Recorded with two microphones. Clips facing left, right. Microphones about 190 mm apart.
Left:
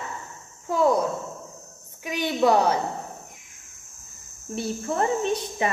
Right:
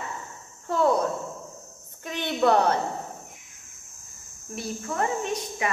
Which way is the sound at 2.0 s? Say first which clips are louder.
Left 2 dB; 10° left (ahead or behind).